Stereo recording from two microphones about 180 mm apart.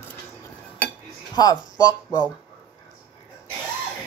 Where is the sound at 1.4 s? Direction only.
20° left (ahead or behind).